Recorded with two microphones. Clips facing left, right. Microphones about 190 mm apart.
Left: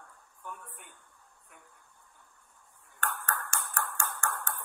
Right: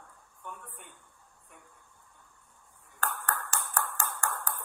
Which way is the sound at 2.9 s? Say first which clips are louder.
Right 1 dB; 35° right (ahead or behind).